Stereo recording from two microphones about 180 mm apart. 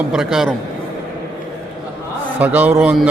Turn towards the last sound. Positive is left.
turn(degrees=-5)  # may be behind; listen again after turning